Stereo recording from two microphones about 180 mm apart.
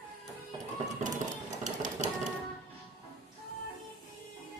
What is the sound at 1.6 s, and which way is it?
Dishes, 45° right (ahead or behind).